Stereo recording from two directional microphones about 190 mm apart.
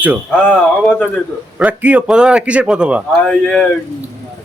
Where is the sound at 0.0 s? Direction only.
5° right (ahead or behind).